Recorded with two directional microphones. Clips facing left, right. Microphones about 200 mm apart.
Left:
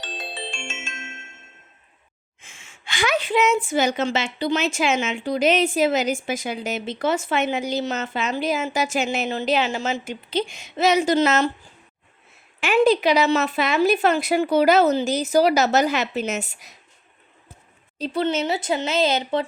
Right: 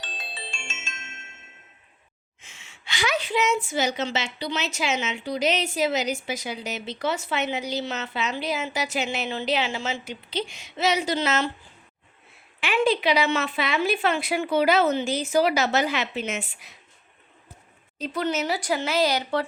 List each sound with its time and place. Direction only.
0.1 s marimba: 65° left (ahead or behind)
2.4 s a woman's voice: 50° left (ahead or behind)
12.5 s a woman's voice: 45° left (ahead or behind)
17.9 s speech: 30° left (ahead or behind)